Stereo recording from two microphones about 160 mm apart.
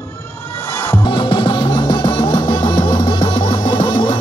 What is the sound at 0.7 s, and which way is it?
Music, 15° left (ahead or behind).